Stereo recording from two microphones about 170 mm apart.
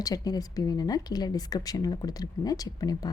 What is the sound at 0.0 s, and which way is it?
A woman's voice, 20° left (ahead or behind).